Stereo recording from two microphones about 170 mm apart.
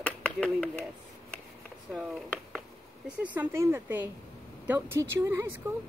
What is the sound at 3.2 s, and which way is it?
A woman's voice, 15° right (ahead or behind).